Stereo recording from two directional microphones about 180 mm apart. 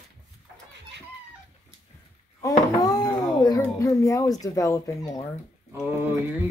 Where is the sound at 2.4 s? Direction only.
20° left (ahead or behind).